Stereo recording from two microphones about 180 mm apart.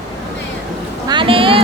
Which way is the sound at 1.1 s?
30° right (ahead or behind).